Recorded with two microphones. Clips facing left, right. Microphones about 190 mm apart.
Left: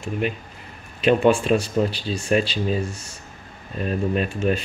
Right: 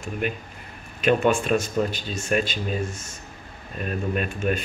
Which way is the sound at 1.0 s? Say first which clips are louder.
Left 3 dB; 35° left (ahead or behind).